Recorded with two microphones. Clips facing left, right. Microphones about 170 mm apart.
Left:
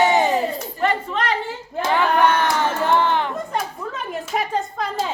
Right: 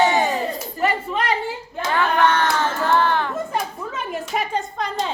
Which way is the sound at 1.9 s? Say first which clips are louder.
Left 1 dB; 15° left (ahead or behind).